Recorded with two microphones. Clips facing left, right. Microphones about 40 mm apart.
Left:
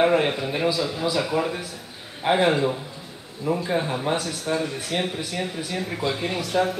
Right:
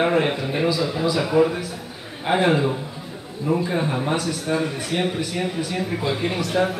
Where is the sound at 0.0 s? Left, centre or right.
Centre.